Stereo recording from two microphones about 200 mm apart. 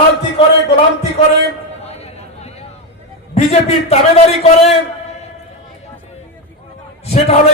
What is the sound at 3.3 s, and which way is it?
A man's voice, 30° left (ahead or behind).